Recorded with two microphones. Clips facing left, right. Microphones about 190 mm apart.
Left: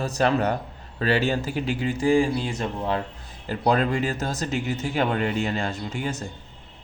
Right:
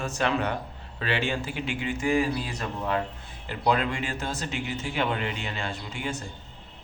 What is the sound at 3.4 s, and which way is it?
Speech, 40° left (ahead or behind).